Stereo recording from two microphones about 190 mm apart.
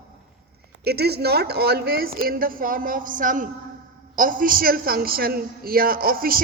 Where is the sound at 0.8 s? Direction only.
55° right (ahead or behind).